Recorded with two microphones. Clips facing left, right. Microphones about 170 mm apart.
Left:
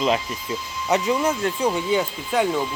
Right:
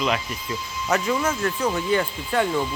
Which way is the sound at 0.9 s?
15° left (ahead or behind).